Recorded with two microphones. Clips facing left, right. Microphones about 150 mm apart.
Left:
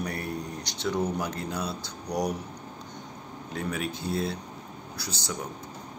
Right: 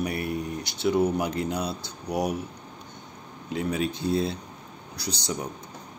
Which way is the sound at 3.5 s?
20° right (ahead or behind).